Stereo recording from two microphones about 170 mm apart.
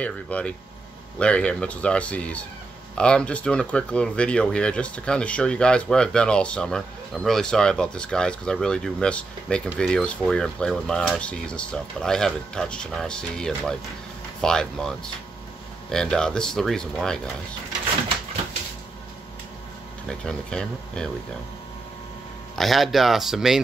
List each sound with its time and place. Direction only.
0.0 s speech: 5° left (ahead or behind)
20.1 s speech: 5° left (ahead or behind)
22.6 s speech: centre (ahead or behind)